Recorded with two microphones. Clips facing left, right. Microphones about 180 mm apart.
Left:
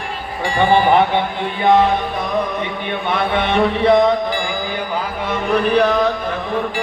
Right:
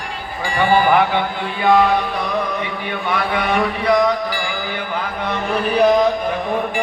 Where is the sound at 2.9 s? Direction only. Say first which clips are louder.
Left 2 dB; 25° left (ahead or behind).